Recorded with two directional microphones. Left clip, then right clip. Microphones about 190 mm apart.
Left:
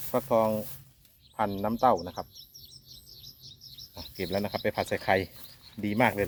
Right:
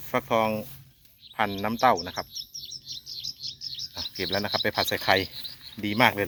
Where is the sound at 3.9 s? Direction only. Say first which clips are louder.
Right 3 dB; 5° right (ahead or behind).